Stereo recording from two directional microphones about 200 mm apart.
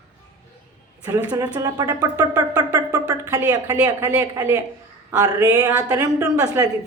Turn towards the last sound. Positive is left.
turn(degrees=-15)  # may be behind; listen again after turning